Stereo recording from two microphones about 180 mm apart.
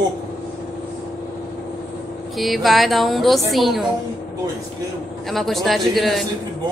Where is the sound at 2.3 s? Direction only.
Centre (ahead or behind).